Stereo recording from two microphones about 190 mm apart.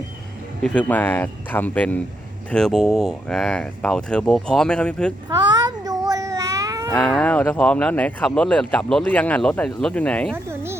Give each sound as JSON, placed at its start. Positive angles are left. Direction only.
{"t": 0.6, "sound": "speech", "side_deg": 5}
{"t": 5.3, "sound": "a sound", "side_deg": -20}
{"t": 6.9, "sound": "speech", "side_deg": 5}
{"t": 10.3, "sound": "insect", "side_deg": -15}